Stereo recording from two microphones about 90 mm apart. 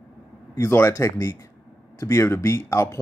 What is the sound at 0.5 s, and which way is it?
Speech, 30° left (ahead or behind).